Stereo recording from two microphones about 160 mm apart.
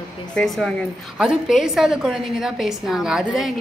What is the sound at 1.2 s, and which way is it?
A woman's voice, 5° right (ahead or behind).